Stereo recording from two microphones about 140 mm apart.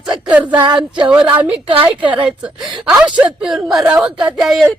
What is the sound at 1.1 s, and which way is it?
A woman's voice, 10° right (ahead or behind).